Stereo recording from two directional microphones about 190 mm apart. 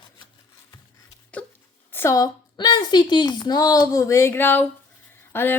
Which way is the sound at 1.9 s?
15° left (ahead or behind).